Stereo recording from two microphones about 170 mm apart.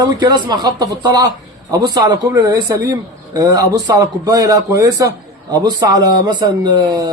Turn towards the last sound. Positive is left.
turn(degrees=-25)  # may be behind; listen again after turning